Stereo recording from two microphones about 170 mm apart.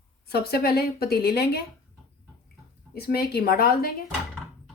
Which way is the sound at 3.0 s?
65° left (ahead or behind).